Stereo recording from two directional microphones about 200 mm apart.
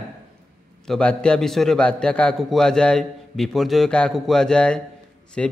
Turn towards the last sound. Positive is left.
turn(degrees=5)  # may be behind; listen again after turning